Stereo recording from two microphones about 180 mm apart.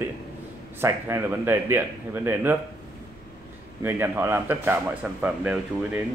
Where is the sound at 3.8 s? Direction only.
10° right (ahead or behind).